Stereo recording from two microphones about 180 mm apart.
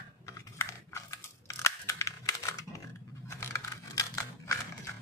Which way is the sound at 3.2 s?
15° left (ahead or behind).